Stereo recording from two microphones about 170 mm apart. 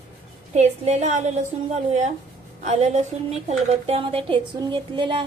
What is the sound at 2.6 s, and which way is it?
A woman's voice, 40° right (ahead or behind).